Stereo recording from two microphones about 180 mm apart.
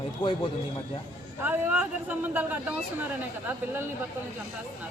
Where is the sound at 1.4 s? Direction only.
10° right (ahead or behind).